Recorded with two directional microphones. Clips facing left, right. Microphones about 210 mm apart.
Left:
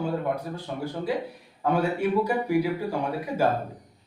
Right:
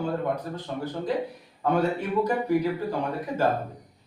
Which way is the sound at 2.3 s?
10° left (ahead or behind).